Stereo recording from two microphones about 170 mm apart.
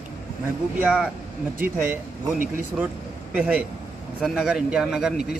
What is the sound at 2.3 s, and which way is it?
Speech, 55° right (ahead or behind).